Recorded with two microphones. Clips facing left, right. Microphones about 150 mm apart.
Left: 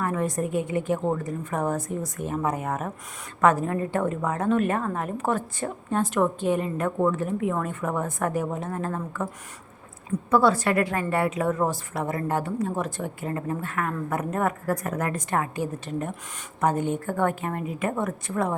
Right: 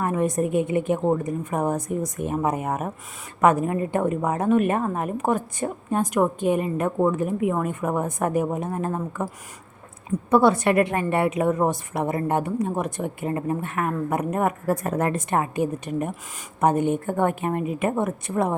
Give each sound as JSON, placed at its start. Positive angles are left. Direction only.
{"t": 0.0, "sound": "a woman's voice", "side_deg": -20}
{"t": 10.2, "sound": "a woman's voice", "side_deg": -20}